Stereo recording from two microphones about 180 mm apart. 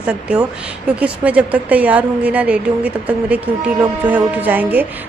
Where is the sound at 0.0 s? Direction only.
5° right (ahead or behind).